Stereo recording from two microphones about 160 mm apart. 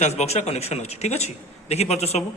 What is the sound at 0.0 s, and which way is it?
A man's voice, 40° left (ahead or behind).